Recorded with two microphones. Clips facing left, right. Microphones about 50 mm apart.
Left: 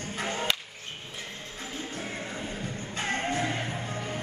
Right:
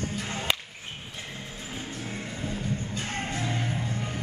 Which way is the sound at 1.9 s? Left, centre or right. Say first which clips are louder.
Left 1 dB; left.